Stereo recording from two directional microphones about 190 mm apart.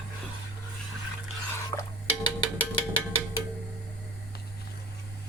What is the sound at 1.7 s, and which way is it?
Dishes, 20° left (ahead or behind).